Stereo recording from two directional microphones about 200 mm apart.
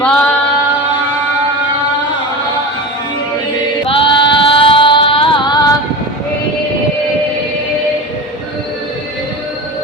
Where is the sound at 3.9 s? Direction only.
25° left (ahead or behind).